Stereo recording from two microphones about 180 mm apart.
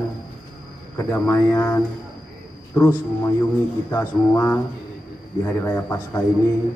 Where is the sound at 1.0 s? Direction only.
15° left (ahead or behind).